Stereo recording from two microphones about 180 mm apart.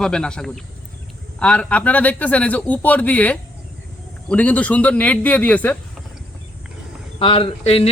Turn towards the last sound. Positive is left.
turn(degrees=30)  # may be behind; listen again after turning